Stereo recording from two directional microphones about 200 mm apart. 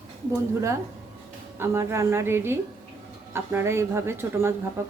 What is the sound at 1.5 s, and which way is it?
Speech, 15° right (ahead or behind).